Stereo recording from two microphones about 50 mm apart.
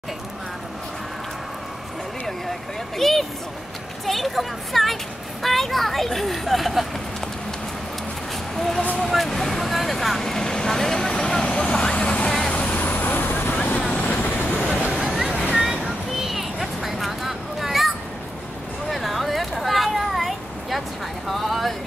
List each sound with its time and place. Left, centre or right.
3.0 s speech: centre
8.5 s speech: centre
8.9 s vehicle: centre; by 12.3 s left
12.3 s vehicle: centre
12.5 s vehicle: left
15.0 s vehicle: centre
15.5 s a sound: centre
21.3 s speech: centre